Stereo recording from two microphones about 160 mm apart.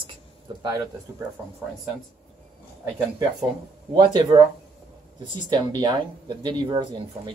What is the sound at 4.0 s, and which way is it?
Speech, 30° right (ahead or behind).